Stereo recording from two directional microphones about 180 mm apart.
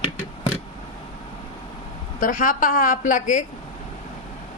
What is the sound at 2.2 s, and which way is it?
A woman's voice, 50° left (ahead or behind).